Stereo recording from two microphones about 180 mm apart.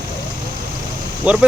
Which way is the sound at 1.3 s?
5° right (ahead or behind).